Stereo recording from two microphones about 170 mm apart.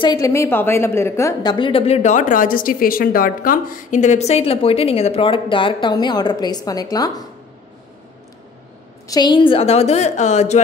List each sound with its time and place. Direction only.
0.0 s a woman's voice: 20° left (ahead or behind)
9.0 s a woman's voice: 25° left (ahead or behind); by 10.6 s 45° left (ahead or behind)